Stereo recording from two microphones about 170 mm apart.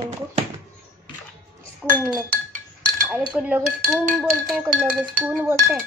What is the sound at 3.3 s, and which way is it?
A child's voice, 5° right (ahead or behind).